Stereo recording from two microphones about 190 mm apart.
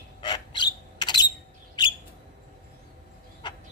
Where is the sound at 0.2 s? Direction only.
25° left (ahead or behind).